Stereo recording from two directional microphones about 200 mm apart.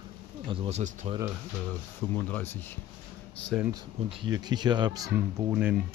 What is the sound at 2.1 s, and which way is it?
Speech, 10° left (ahead or behind).